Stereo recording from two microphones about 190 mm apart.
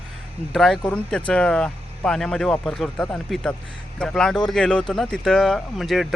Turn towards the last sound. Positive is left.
turn(degrees=0)  # may be behind; listen again after turning